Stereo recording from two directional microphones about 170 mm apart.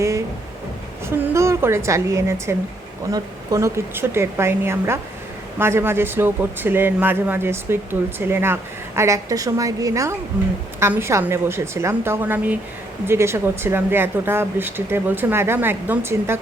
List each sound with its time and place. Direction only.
1.3 s a woman's voice: 15° right (ahead or behind)